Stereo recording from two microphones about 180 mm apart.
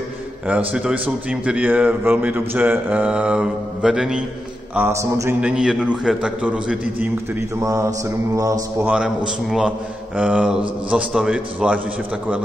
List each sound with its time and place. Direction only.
0.5 s a man's voice: 5° right (ahead or behind)
4.7 s a man's voice: 15° right (ahead or behind)
5.4 s a man's voice: 5° right (ahead or behind)
8.8 s a man's voice: 5° right (ahead or behind)